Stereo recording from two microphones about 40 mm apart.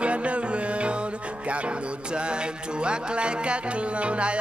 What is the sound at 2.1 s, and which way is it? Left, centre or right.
Music, right.